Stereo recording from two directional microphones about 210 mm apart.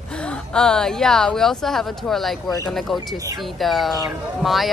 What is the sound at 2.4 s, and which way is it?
Speech, 20° left (ahead or behind).